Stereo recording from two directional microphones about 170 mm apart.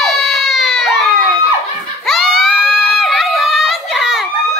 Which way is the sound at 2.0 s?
Centre (ahead or behind).